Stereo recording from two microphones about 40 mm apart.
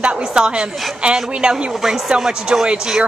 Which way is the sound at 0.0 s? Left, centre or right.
Right.